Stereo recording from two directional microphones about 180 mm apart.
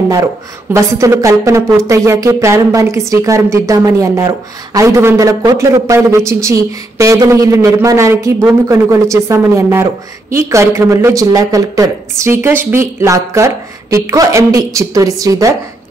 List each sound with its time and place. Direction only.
0.7 s speech: 15° right (ahead or behind)